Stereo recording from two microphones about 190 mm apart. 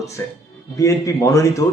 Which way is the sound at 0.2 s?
15° left (ahead or behind).